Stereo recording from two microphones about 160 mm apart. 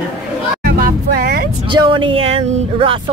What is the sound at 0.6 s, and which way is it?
Music, 65° right (ahead or behind).